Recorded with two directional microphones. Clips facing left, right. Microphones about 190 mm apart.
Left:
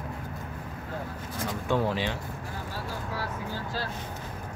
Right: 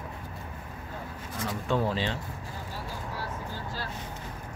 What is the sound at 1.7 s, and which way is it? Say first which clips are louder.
Speech: left 1 dB; 15° left (ahead or behind).